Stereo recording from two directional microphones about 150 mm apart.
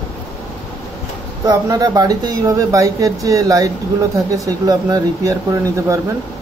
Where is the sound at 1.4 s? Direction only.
20° right (ahead or behind).